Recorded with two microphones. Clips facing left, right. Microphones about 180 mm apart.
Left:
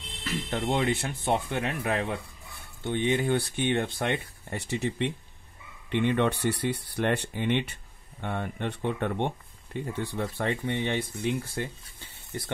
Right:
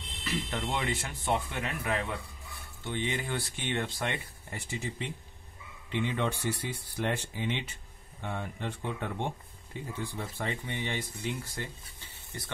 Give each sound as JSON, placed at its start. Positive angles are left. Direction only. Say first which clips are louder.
{"t": 0.5, "sound": "speech", "louder": "left 9 dB", "side_deg": 45}
{"t": 1.6, "sound": "speech", "louder": "left 4 dB", "side_deg": 40}
{"t": 2.9, "sound": "speech", "louder": "left 8 dB", "side_deg": 55}